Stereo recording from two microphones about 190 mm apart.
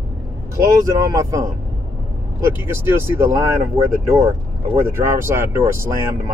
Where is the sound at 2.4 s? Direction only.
15° right (ahead or behind).